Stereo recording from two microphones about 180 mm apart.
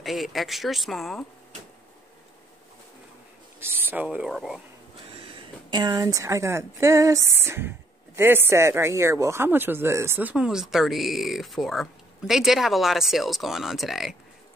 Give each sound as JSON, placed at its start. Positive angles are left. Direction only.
{"t": 0.0, "sound": "speech", "side_deg": 0}
{"t": 3.5, "sound": "speech", "side_deg": -10}
{"t": 5.1, "sound": "speech", "side_deg": -30}